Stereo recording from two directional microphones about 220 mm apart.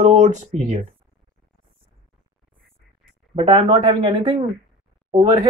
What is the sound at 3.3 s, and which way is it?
Speech, 20° right (ahead or behind).